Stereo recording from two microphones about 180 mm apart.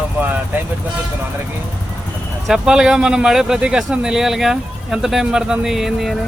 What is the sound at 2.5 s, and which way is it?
Speech, 5° right (ahead or behind).